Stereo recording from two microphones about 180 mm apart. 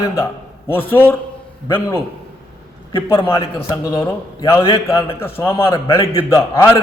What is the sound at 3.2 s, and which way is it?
A man's voice, 25° left (ahead or behind).